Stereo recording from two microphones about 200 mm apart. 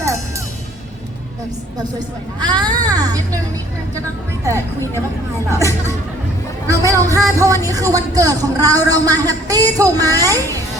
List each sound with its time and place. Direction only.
2.4 s speech: 20° right (ahead or behind)
5.5 s speech: 15° right (ahead or behind)